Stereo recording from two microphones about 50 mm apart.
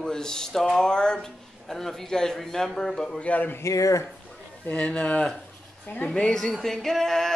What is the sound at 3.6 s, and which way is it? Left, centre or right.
Speech, left.